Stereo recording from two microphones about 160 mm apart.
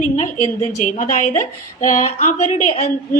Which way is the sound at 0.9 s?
50° left (ahead or behind).